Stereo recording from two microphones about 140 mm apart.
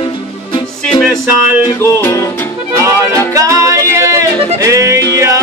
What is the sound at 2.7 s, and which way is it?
Accordion, 20° right (ahead or behind).